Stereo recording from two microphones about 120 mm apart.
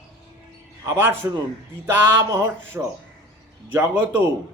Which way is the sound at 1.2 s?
25° right (ahead or behind).